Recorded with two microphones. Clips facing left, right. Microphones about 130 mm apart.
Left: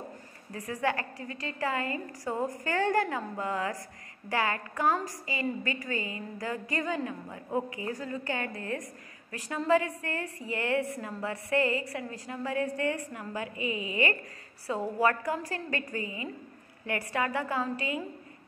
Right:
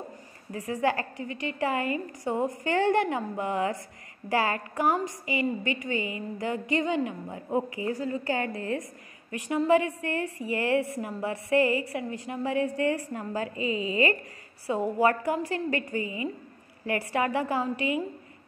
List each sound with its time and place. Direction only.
0.5 s a woman's voice: 30° right (ahead or behind)
1.2 s a woman's voice: 35° left (ahead or behind)
1.6 s a woman's voice: 25° right (ahead or behind)